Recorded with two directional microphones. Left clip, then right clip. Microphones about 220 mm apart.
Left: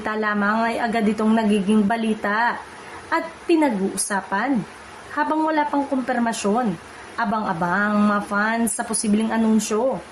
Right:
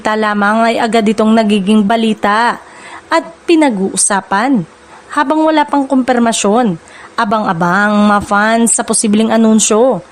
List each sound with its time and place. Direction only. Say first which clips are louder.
0.0 s a woman's voice: right 10 dB; 45° right (ahead or behind)